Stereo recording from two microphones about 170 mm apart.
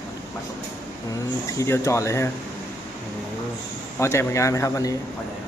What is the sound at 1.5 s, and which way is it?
Speech, 15° left (ahead or behind).